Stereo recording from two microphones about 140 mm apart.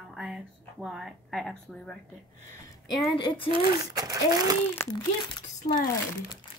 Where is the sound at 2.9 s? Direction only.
35° left (ahead or behind).